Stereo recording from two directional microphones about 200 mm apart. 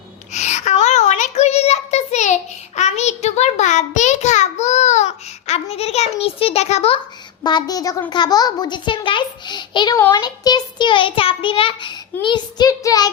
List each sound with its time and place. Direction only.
0.3 s child singing: 35° left (ahead or behind)
7.4 s a child's voice: 20° left (ahead or behind)